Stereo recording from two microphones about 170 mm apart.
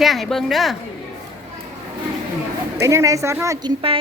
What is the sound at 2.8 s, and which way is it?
Speech, 20° right (ahead or behind).